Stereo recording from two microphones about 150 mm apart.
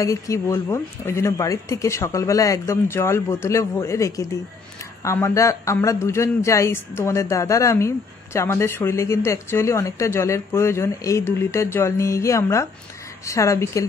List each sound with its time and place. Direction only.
0.0 s speech: 20° left (ahead or behind)